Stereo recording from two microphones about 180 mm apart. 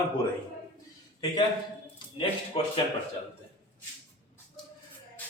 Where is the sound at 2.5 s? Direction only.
30° left (ahead or behind).